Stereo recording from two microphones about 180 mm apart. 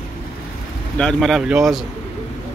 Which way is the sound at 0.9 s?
5° left (ahead or behind).